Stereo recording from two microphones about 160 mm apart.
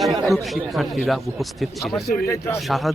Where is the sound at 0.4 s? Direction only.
Centre (ahead or behind).